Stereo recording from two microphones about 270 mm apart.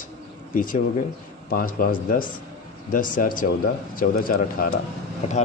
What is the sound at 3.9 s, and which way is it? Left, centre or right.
Speech, left.